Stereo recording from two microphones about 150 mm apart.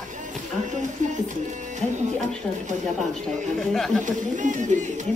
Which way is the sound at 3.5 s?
5° left (ahead or behind).